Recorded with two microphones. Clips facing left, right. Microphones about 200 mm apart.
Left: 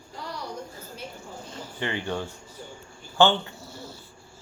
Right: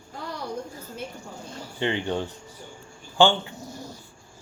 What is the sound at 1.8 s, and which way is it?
Speech, 20° right (ahead or behind).